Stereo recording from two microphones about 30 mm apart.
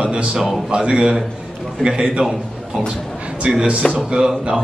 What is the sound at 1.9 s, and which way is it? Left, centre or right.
Speech, right.